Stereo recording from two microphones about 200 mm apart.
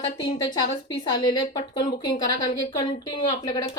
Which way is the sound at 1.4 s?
20° left (ahead or behind).